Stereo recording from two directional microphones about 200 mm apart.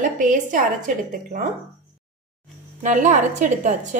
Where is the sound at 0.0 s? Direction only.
40° right (ahead or behind).